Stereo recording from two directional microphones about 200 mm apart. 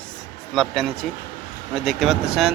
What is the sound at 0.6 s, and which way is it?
Speech, centre (ahead or behind).